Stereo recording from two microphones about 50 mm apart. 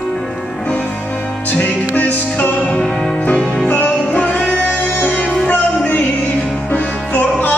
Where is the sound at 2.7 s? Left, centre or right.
Left.